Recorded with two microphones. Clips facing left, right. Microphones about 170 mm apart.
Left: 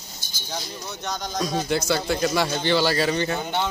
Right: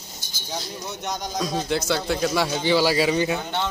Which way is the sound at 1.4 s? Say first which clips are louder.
Left 1 dB; centre (ahead or behind).